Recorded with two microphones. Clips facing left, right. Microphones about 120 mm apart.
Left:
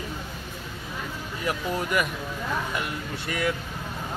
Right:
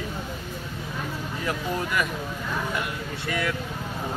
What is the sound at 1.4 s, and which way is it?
Speech, 20° left (ahead or behind).